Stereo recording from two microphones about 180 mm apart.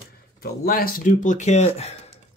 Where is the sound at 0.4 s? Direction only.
55° left (ahead or behind); by 2.0 s 35° left (ahead or behind).